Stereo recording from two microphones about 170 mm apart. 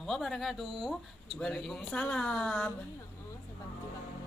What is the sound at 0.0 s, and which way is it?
A woman's voice, centre (ahead or behind).